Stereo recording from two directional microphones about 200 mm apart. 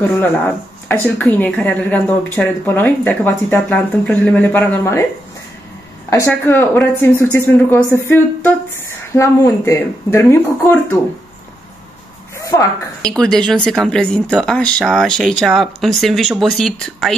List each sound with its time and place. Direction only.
1.0 s speech: 10° left (ahead or behind)
6.0 s speech: 15° left (ahead or behind)
12.4 s a sound: 15° left (ahead or behind)
13.0 s speech: 5° left (ahead or behind)